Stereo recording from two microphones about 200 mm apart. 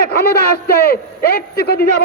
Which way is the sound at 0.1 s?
50° left (ahead or behind).